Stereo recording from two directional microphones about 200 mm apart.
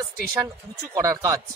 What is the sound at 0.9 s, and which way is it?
Speech, 15° right (ahead or behind).